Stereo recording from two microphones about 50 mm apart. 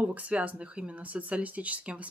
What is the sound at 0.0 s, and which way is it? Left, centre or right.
Speech, right.